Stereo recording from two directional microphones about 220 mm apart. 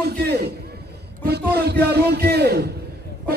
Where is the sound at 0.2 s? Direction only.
45° right (ahead or behind).